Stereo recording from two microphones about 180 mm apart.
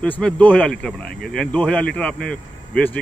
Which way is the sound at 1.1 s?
60° left (ahead or behind).